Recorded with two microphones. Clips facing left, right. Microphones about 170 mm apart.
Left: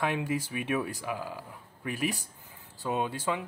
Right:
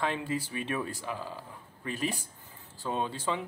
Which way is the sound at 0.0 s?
15° left (ahead or behind).